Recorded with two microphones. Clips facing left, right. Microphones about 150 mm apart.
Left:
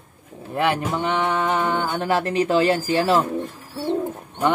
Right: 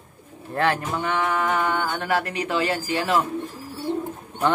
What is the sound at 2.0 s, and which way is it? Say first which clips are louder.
Speech: left 4 dB; 30° left (ahead or behind).